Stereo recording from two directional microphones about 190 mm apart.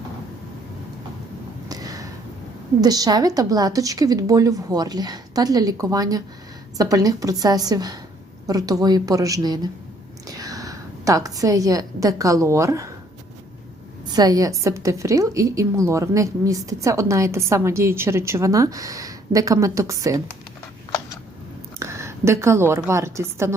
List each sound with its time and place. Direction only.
1.7 s a sound: 20° right (ahead or behind)
2.8 s a woman's voice: 20° right (ahead or behind)
14.1 s a woman's voice: 20° right (ahead or behind)
21.8 s a woman's voice: 15° right (ahead or behind)